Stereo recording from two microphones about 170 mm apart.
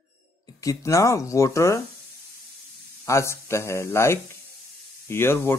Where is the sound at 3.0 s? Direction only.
15° left (ahead or behind).